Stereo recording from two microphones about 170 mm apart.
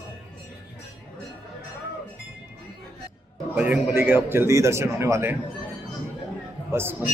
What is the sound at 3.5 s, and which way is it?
A man's voice, 10° right (ahead or behind).